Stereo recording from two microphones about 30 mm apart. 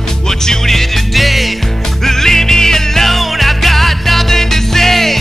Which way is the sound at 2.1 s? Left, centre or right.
Centre.